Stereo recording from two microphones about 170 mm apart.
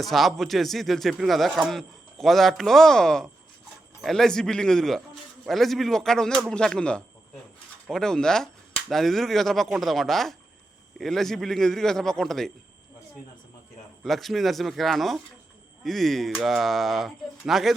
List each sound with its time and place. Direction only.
0.0 s a man's voice: centre (ahead or behind)
14.0 s a man's voice: centre (ahead or behind)